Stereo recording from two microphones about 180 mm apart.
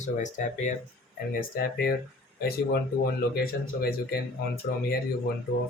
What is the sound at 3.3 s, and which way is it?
Speech, 60° left (ahead or behind).